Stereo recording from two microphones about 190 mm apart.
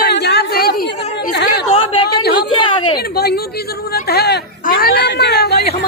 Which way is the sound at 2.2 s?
55° left (ahead or behind).